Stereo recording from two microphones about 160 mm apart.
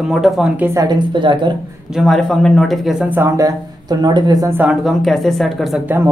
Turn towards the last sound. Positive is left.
turn(degrees=0)  # may be behind; listen again after turning